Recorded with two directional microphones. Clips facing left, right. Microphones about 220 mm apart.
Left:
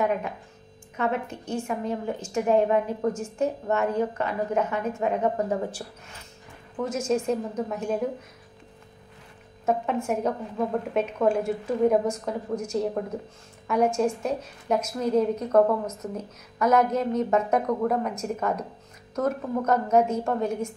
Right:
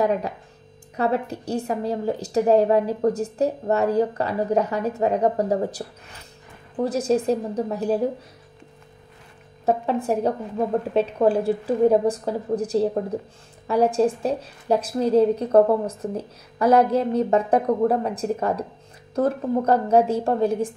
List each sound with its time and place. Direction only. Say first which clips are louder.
0.0 s a woman's voice: right 4 dB; 35° right (ahead or behind)
9.7 s a woman's voice: right 4 dB; 35° right (ahead or behind)